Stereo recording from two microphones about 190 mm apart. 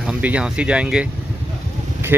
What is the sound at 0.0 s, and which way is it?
Speech, 5° right (ahead or behind).